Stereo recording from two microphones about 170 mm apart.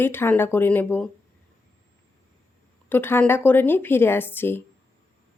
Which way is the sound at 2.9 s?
10° left (ahead or behind).